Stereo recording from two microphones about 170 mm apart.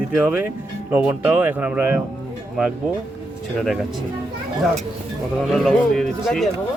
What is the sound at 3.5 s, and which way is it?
Speech, centre (ahead or behind).